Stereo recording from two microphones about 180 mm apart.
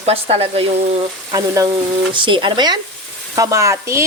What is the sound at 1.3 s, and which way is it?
A woman's voice, 20° right (ahead or behind).